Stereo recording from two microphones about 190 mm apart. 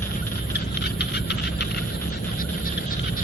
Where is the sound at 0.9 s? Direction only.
60° left (ahead or behind).